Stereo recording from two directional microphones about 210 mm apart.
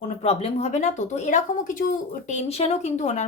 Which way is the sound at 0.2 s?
30° left (ahead or behind).